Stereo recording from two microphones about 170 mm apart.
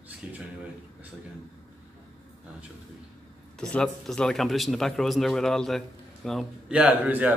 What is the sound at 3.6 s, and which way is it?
A man's voice, 5° left (ahead or behind).